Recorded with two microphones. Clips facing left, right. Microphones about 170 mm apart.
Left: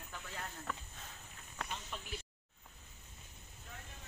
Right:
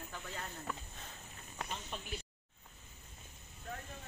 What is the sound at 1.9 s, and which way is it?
Snake, 25° right (ahead or behind).